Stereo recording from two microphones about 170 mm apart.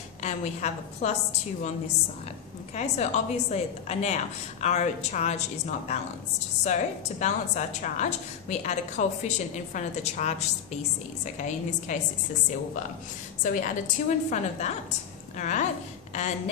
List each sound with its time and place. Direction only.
0.2 s a woman's voice: 45° left (ahead or behind)
2.7 s a woman's voice: 40° left (ahead or behind)
11.9 s a woman's voice: 45° left (ahead or behind)
13.4 s a woman's voice: 50° left (ahead or behind)